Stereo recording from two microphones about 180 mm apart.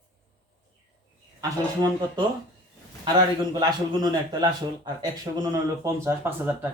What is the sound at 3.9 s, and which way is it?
Speech, 25° right (ahead or behind).